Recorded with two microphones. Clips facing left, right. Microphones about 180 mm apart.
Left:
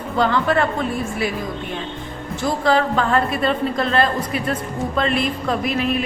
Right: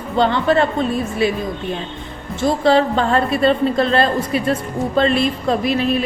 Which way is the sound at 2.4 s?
25° right (ahead or behind).